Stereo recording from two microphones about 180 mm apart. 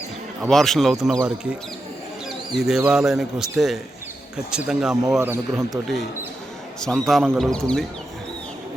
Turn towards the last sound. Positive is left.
turn(degrees=0)  # may be behind; listen again after turning